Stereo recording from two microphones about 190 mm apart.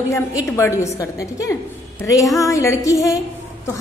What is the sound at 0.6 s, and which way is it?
A woman's voice, 15° left (ahead or behind).